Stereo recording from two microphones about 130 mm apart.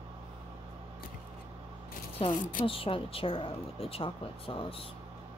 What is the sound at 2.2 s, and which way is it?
Speech, 45° left (ahead or behind).